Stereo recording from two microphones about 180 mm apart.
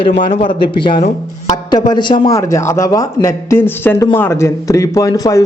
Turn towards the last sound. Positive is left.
turn(degrees=20)  # may be behind; listen again after turning